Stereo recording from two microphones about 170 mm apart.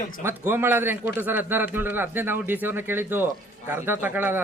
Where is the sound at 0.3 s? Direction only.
15° right (ahead or behind).